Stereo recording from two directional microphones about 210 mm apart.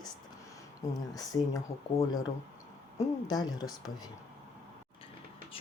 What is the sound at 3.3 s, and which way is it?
Speech, 20° left (ahead or behind).